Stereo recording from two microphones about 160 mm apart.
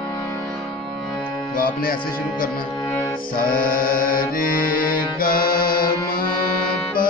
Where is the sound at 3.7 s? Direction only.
60° left (ahead or behind).